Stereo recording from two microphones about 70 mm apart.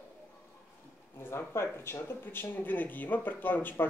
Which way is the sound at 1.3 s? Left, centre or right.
Left.